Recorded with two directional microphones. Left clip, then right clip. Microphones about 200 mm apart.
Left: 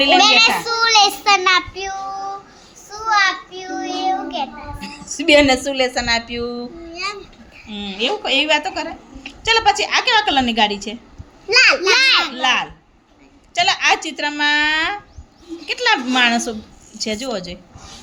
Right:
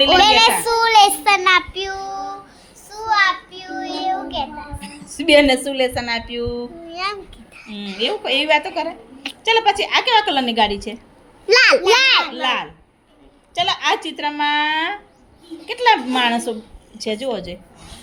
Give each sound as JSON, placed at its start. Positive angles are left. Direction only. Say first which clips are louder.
{"t": 0.2, "sound": "a sound", "louder": "even", "side_deg": -20}
{"t": 0.6, "sound": "child singing", "louder": "right 2 dB", "side_deg": -15}
{"t": 6.9, "sound": "a child's voice", "louder": "right 2 dB", "side_deg": -50}
{"t": 7.9, "sound": "a woman's voice", "louder": "left 1 dB", "side_deg": 0}
{"t": 11.4, "sound": "a child's voice", "louder": "right 1 dB", "side_deg": -50}
{"t": 11.9, "sound": "a child's voice", "louder": "even", "side_deg": -10}
{"t": 12.3, "sound": "a woman's voice", "louder": "left 3 dB", "side_deg": 5}